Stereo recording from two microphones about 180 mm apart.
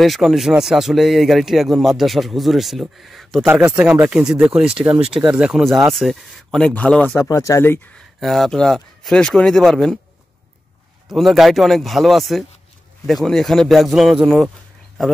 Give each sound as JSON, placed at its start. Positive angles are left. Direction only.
{"t": 0.0, "sound": "speech", "side_deg": 0}
{"t": 7.2, "sound": "speech", "side_deg": 20}
{"t": 11.1, "sound": "speech", "side_deg": 0}